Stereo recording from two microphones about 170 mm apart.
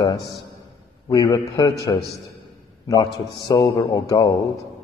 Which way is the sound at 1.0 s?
25° left (ahead or behind).